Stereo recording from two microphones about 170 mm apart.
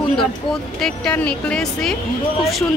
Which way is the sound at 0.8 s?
10° left (ahead or behind).